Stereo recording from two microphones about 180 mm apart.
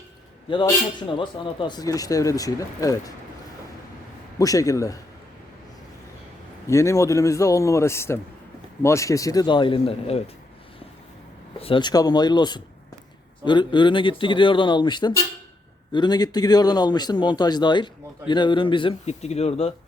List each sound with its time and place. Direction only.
1.0 s speech: 25° left (ahead or behind)
4.4 s speech: 20° left (ahead or behind)
6.7 s a man's voice: 15° left (ahead or behind); by 10.2 s 35° left (ahead or behind)
11.6 s speech: 25° left (ahead or behind)